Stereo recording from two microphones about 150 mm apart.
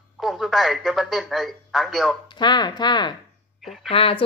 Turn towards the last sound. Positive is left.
turn(degrees=40)  # may be behind; listen again after turning